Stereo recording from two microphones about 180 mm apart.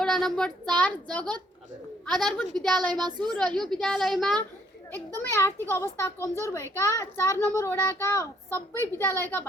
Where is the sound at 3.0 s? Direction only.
25° right (ahead or behind).